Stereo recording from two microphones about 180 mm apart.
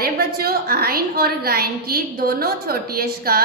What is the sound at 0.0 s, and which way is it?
A woman's voice, 55° right (ahead or behind).